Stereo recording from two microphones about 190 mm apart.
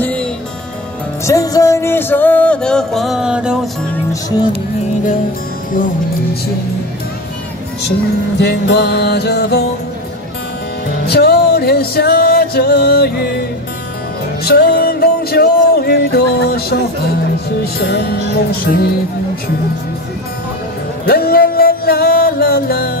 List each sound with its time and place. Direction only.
0.0 s music: 5° left (ahead or behind)
1.2 s music: 20° left (ahead or behind); by 3.5 s 5° right (ahead or behind)
4.1 s speech: 20° left (ahead or behind)
8.4 s music: 60° left (ahead or behind)
10.9 s music: 55° left (ahead or behind)
17.7 s music: 55° left (ahead or behind)
21.0 s music: 55° left (ahead or behind)